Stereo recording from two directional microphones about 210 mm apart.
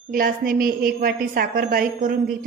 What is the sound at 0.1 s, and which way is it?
A woman's voice, 45° right (ahead or behind).